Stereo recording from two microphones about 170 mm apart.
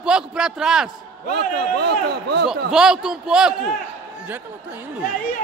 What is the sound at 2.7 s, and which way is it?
Speech, 5° right (ahead or behind).